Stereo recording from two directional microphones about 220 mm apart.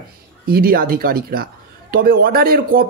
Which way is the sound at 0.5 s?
45° right (ahead or behind).